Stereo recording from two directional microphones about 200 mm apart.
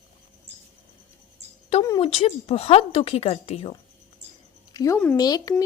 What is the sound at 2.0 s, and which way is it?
A woman's voice, 30° left (ahead or behind).